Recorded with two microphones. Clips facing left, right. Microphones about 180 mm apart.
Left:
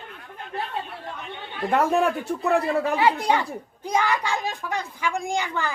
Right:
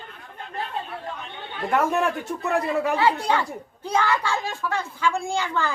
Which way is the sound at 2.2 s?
30° left (ahead or behind).